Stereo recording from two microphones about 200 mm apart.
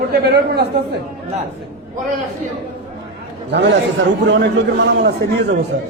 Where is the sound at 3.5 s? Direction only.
60° right (ahead or behind).